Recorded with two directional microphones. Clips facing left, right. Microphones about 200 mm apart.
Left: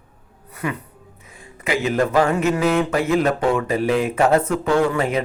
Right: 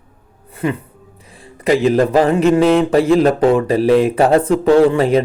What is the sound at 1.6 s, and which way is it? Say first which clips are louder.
Speech: right 7 dB; 35° right (ahead or behind).